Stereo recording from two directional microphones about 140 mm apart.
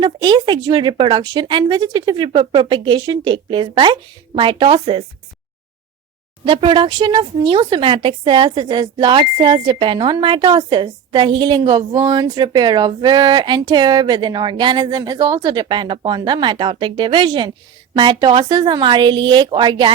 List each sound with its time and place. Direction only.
0.0 s speech: 35° right (ahead or behind)
6.4 s speech: 40° right (ahead or behind)